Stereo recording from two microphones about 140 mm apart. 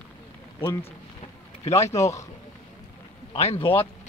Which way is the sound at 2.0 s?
20° left (ahead or behind).